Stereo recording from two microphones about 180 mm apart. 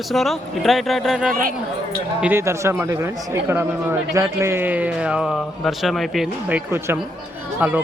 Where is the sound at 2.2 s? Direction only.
10° right (ahead or behind).